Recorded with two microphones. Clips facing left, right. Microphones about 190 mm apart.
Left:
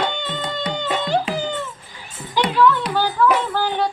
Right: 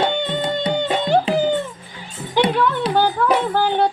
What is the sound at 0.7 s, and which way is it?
Music, 55° right (ahead or behind).